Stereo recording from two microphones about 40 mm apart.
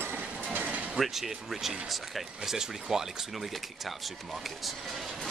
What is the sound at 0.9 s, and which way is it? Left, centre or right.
Speech, centre.